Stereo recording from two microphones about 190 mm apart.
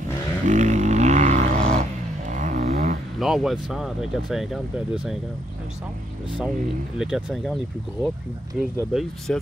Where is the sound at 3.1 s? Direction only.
Centre (ahead or behind).